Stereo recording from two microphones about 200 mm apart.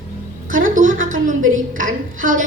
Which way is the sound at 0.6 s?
40° right (ahead or behind).